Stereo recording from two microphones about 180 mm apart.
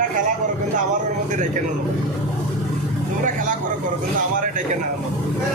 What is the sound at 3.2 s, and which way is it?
Speech, 45° right (ahead or behind).